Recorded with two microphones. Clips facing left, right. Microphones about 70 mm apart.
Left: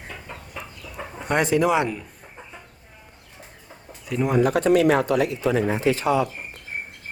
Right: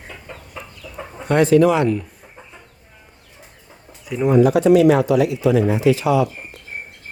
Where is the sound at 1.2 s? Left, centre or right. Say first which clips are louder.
Right 6 dB; centre.